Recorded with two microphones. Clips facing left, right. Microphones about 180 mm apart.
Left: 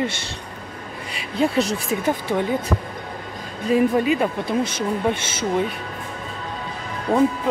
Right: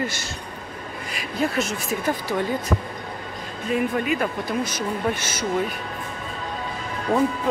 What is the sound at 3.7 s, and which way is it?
Speech, 30° left (ahead or behind).